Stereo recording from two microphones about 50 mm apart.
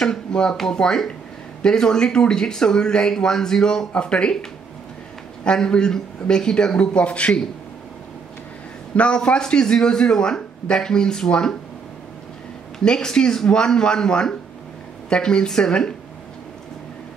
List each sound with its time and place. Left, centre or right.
0.0 s a sound: centre
0.6 s speech: centre
8.9 s speech: left
12.7 s speech: centre